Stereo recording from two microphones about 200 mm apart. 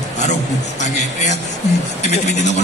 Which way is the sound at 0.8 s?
35° left (ahead or behind).